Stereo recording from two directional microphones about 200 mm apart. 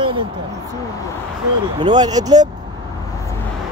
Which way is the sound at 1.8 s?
20° right (ahead or behind).